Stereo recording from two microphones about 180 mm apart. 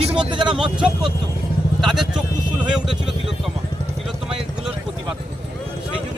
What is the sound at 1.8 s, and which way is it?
Speech, centre (ahead or behind).